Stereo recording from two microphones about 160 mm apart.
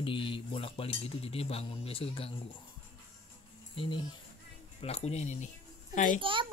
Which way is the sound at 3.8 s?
30° left (ahead or behind).